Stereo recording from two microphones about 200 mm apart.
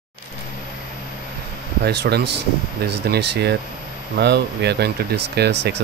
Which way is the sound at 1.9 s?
55° right (ahead or behind).